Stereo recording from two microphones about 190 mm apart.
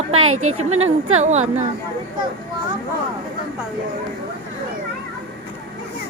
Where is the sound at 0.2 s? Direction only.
90° right.